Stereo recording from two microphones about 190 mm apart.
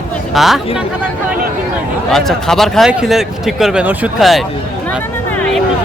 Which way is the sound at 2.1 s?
Centre (ahead or behind).